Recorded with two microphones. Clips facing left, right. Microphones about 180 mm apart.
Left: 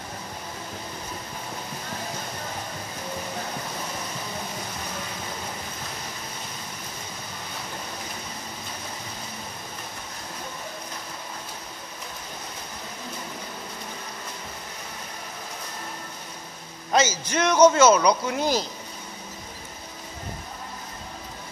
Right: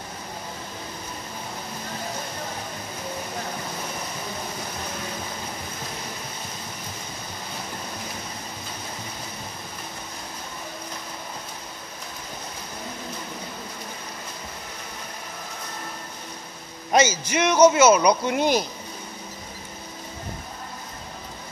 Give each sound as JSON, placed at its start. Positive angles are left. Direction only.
{"t": 16.9, "sound": "a man's voice", "side_deg": -15}